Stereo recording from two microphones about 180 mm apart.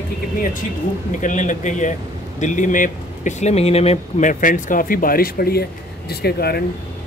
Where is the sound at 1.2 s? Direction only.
45° left (ahead or behind).